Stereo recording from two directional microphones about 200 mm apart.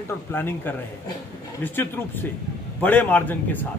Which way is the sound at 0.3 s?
10° left (ahead or behind).